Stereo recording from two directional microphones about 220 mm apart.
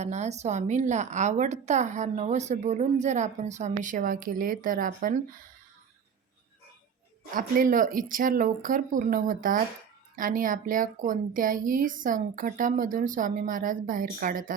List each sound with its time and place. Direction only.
0.0 s a woman's voice: 30° right (ahead or behind)
7.3 s a woman's voice: 40° right (ahead or behind)